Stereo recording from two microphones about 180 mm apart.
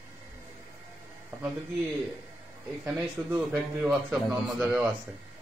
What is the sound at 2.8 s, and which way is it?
A man's voice, 10° right (ahead or behind).